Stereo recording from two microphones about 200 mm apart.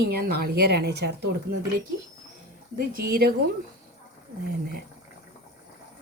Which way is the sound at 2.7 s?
50° right (ahead or behind).